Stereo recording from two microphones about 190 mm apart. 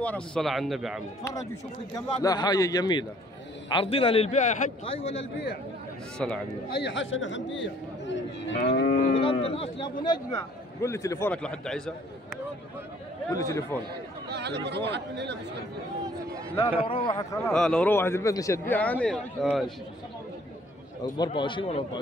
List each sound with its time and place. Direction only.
0.0 s speech: 5° left (ahead or behind)
2.0 s a man's voice: 20° left (ahead or behind)
6.1 s speech: 5° left (ahead or behind)
6.8 s a man's voice: 80° left; by 9.1 s 55° left (ahead or behind)
9.1 s speech: 30° left (ahead or behind); by 11.9 s 5° left (ahead or behind)
13.4 s speech: 15° left (ahead or behind)
14.3 s speech: 65° right (ahead or behind)
16.8 s a man's voice: 25° left (ahead or behind)
17.5 s speech: 5° left (ahead or behind)
21.2 s a man's voice: 25° left (ahead or behind)